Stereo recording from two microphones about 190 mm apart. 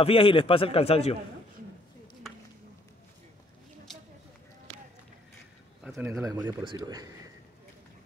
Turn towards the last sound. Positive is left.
turn(degrees=-20)  # may be behind; listen again after turning